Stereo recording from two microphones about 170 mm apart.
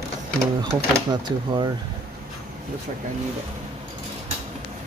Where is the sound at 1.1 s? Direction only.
25° right (ahead or behind).